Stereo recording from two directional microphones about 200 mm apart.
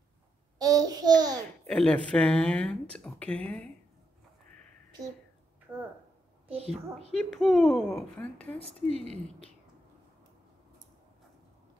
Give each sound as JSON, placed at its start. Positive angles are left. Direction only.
{"t": 0.6, "sound": "a child's voice", "side_deg": -20}
{"t": 1.7, "sound": "speech", "side_deg": 5}
{"t": 6.5, "sound": "a child's voice", "side_deg": -30}
{"t": 7.2, "sound": "speech", "side_deg": 0}